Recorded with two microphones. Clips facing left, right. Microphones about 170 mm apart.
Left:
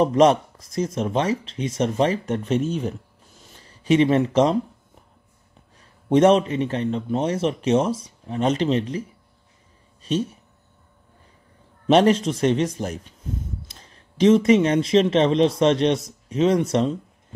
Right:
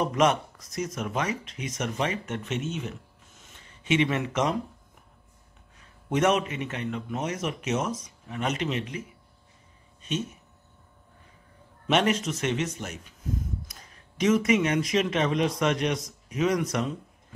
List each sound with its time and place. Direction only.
0.0 s speech: 30° left (ahead or behind)
5.8 s a man's voice: 30° left (ahead or behind)
10.1 s a man's voice: 35° left (ahead or behind)
11.9 s a man's voice: 35° left (ahead or behind)